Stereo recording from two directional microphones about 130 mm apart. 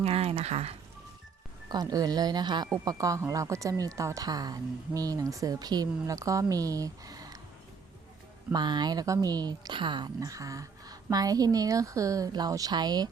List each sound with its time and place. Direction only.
0.0 s a sound: 50° right (ahead or behind)
1.7 s a woman's voice: 30° right (ahead or behind)
8.5 s a woman's voice: 35° right (ahead or behind)